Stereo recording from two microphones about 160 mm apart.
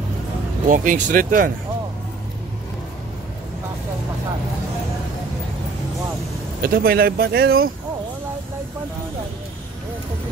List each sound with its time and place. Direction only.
0.7 s speech: 55° right (ahead or behind)
6.6 s speech: 65° right (ahead or behind)